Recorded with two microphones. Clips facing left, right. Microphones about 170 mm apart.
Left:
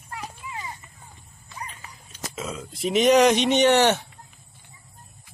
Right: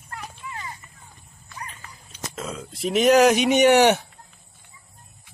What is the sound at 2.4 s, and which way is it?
Speech, centre (ahead or behind).